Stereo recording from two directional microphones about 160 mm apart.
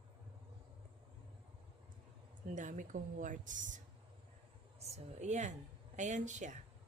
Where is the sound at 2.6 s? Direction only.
50° right (ahead or behind).